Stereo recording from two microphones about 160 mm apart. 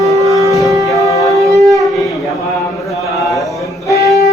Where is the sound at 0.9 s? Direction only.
20° left (ahead or behind).